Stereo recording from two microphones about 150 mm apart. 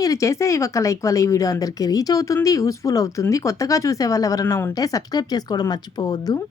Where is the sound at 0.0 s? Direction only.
20° left (ahead or behind).